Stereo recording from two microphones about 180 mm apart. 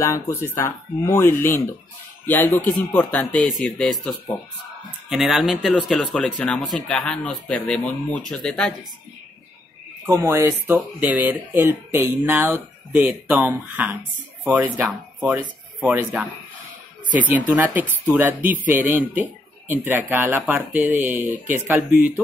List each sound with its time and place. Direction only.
0.0 s speech: 15° left (ahead or behind)
5.1 s speech: centre (ahead or behind)
10.0 s speech: 15° right (ahead or behind)
17.3 s speech: 10° right (ahead or behind)